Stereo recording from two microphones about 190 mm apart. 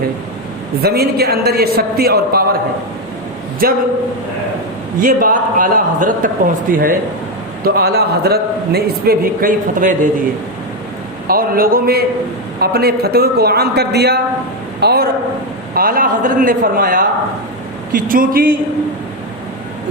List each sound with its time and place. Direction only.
0.8 s a man's voice: 55° right (ahead or behind)
3.6 s a man's voice: 50° right (ahead or behind)
4.9 s a man's voice: 45° right (ahead or behind)
11.3 s a man's voice: 50° right (ahead or behind)